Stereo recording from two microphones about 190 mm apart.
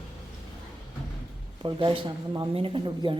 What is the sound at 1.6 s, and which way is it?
Speech, 25° right (ahead or behind).